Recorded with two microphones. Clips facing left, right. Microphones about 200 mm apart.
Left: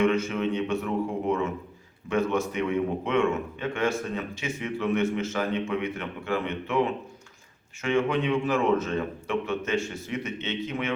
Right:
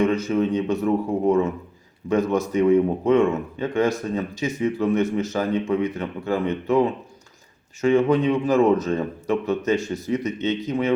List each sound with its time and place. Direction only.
0.0 s a man's voice: 35° right (ahead or behind)
2.0 s a man's voice: 40° right (ahead or behind)
7.8 s a man's voice: 35° right (ahead or behind)